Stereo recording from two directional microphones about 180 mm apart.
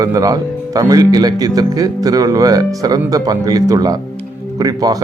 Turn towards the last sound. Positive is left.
turn(degrees=-20)  # may be behind; listen again after turning